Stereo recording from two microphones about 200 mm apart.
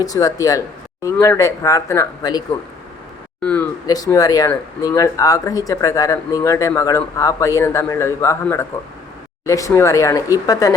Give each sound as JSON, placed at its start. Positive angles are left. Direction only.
{"t": 0.0, "sound": "speech", "side_deg": 20}
{"t": 3.4, "sound": "speech", "side_deg": 5}
{"t": 3.8, "sound": "speech", "side_deg": 20}